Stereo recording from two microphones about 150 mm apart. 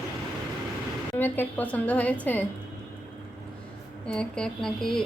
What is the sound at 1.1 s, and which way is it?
A woman's voice, 15° left (ahead or behind).